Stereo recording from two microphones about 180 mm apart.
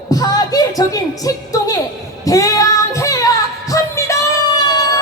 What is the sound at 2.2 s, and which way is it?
Female singing, 20° left (ahead or behind).